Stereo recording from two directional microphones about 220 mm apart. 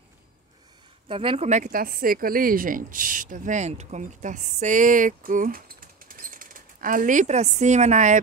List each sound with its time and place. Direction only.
1.0 s speech: 25° right (ahead or behind)